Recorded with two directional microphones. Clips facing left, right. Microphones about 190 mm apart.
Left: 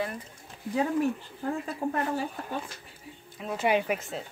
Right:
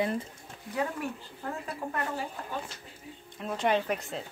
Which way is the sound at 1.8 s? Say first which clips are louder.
Left 6 dB; 35° left (ahead or behind).